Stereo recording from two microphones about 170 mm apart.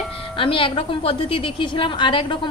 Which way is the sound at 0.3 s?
30° left (ahead or behind).